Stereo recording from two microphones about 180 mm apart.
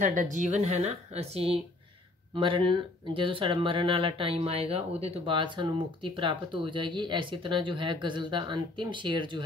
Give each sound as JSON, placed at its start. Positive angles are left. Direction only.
{"t": 0.0, "sound": "a woman's voice", "side_deg": -45}